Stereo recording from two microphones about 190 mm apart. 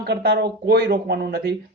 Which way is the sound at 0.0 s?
55° right (ahead or behind).